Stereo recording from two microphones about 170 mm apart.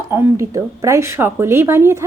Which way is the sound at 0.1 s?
15° right (ahead or behind).